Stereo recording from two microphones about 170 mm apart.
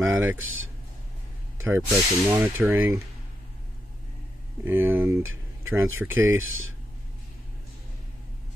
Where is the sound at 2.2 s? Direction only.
15° right (ahead or behind).